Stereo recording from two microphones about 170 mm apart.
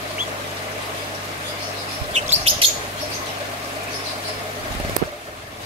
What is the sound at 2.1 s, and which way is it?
Chirp, 40° right (ahead or behind).